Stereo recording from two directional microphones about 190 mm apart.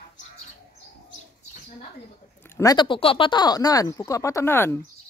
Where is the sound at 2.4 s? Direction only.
15° left (ahead or behind).